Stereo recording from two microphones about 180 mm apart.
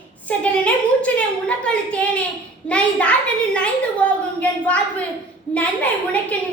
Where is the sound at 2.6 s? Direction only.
5° left (ahead or behind).